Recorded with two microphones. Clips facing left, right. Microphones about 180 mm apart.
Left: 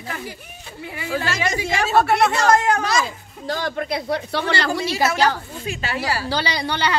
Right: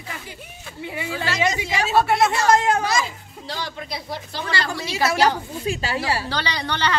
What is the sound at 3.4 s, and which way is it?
Speech, 50° left (ahead or behind).